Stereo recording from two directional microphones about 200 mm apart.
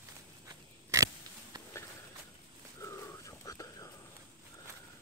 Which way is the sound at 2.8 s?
15° left (ahead or behind).